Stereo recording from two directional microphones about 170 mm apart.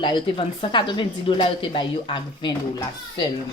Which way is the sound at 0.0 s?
30° left (ahead or behind).